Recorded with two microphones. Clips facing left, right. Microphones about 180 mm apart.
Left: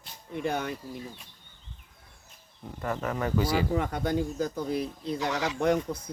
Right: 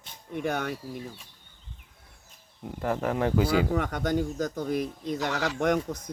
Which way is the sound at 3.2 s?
65° right (ahead or behind).